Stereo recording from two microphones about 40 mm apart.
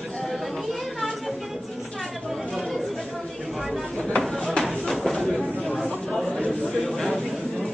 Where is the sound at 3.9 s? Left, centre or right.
Centre.